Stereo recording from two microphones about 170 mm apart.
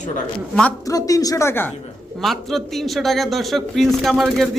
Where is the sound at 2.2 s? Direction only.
Centre (ahead or behind).